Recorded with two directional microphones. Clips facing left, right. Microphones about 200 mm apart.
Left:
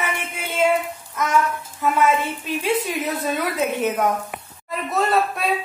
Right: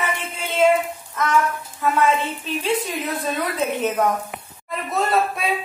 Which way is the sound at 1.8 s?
10° left (ahead or behind).